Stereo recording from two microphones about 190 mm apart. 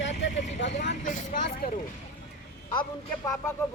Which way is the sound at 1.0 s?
45° left (ahead or behind).